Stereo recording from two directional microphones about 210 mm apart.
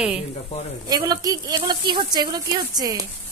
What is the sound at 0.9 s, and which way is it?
A woman's voice, 15° right (ahead or behind).